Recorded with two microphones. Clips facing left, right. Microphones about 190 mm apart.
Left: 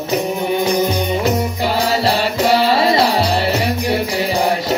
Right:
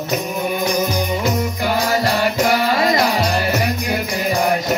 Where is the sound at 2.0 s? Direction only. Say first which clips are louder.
Left 1 dB; 30° left (ahead or behind).